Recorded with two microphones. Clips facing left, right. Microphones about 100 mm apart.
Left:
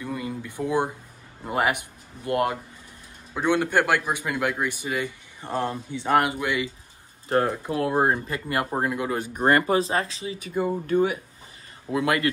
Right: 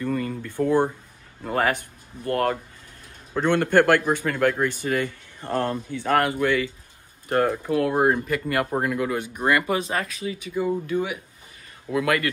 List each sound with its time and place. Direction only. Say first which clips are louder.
0.0 s a man's voice: right 4 dB; 10° left (ahead or behind)
7.7 s speech: right 2 dB; 25° left (ahead or behind)
9.2 s speech: left 2 dB; 40° left (ahead or behind)
10.4 s speech: even; 45° left (ahead or behind)
11.9 s speech: right 1 dB; 25° left (ahead or behind)